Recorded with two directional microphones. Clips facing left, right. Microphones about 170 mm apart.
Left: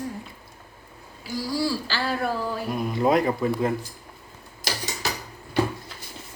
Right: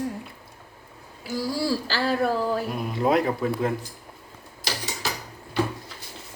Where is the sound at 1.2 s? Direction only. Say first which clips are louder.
Even; 50° right (ahead or behind).